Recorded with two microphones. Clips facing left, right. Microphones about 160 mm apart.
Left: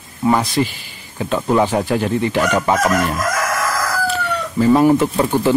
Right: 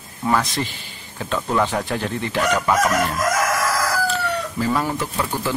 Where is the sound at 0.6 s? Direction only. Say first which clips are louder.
Left 8 dB; 15° left (ahead or behind).